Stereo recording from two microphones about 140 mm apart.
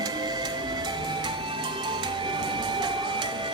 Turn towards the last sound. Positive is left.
turn(degrees=-30)  # may be behind; listen again after turning